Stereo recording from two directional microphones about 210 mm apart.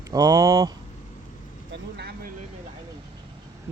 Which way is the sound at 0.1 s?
15° right (ahead or behind).